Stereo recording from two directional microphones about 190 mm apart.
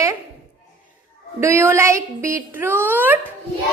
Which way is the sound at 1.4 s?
15° right (ahead or behind).